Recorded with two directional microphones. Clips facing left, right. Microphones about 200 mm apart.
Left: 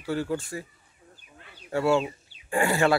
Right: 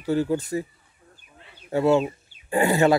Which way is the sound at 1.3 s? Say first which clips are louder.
Right 4 dB; 25° right (ahead or behind).